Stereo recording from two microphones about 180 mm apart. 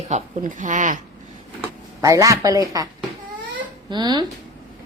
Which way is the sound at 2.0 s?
20° right (ahead or behind).